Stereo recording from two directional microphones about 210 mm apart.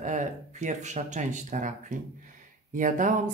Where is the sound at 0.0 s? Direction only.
35° right (ahead or behind).